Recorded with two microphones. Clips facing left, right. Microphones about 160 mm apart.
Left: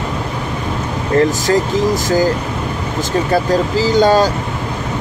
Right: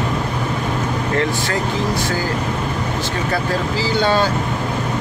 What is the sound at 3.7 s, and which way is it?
Speech, 40° left (ahead or behind).